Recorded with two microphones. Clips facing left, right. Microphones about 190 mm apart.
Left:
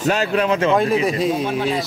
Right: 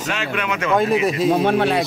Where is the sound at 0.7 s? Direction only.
Centre (ahead or behind).